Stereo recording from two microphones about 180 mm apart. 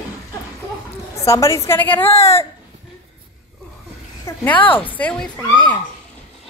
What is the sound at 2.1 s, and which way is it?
Speech, 35° left (ahead or behind).